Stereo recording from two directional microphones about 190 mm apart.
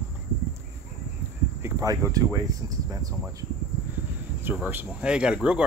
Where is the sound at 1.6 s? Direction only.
20° right (ahead or behind).